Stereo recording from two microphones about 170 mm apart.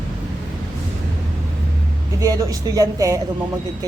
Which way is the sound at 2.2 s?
20° right (ahead or behind).